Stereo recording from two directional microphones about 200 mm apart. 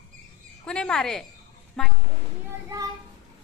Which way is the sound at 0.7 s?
5° left (ahead or behind).